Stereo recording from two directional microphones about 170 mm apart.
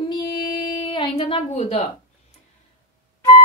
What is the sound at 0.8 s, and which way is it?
A woman's voice, 30° left (ahead or behind).